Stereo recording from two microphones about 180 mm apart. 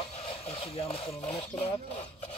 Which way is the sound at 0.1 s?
35° left (ahead or behind).